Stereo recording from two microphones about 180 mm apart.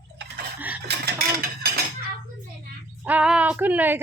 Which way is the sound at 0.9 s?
60° right (ahead or behind).